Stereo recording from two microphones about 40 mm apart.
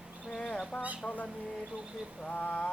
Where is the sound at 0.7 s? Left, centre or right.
Left.